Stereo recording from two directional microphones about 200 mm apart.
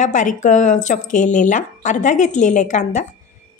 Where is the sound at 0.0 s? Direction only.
40° left (ahead or behind).